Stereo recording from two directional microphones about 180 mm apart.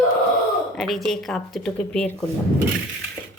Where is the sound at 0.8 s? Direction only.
Centre (ahead or behind).